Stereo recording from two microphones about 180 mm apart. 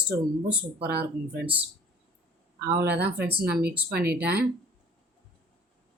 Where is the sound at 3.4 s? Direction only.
60° right (ahead or behind).